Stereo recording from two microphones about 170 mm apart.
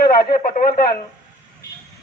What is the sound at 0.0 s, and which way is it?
Speech, 60° left (ahead or behind).